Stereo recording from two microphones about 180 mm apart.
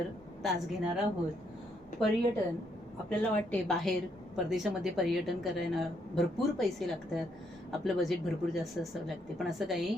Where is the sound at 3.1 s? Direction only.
5° left (ahead or behind).